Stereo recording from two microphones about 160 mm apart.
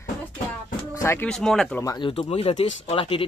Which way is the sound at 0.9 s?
15° left (ahead or behind).